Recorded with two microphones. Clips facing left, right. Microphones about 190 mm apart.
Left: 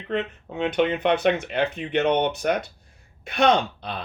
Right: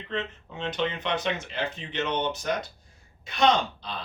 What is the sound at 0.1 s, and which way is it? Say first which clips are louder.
Speech: left 6 dB; 60° left (ahead or behind).